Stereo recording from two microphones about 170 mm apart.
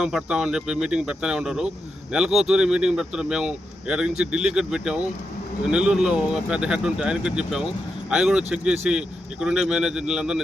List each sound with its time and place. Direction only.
0.0 s speech: 5° right (ahead or behind)